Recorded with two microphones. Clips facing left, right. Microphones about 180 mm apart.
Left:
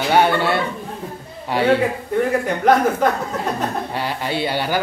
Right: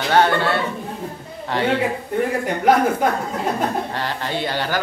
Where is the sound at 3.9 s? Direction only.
10° left (ahead or behind).